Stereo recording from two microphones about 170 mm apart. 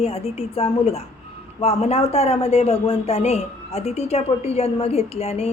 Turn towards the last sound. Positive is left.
turn(degrees=35)  # may be behind; listen again after turning